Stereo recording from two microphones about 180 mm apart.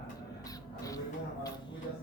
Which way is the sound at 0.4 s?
20° left (ahead or behind).